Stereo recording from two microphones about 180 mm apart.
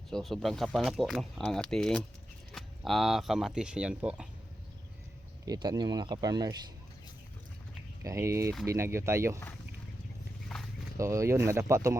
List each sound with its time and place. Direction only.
0.1 s speech: centre (ahead or behind)
5.5 s speech: 20° right (ahead or behind)
8.0 s speech: 15° right (ahead or behind)
10.5 s a sound: 5° left (ahead or behind)
10.9 s speech: 15° right (ahead or behind)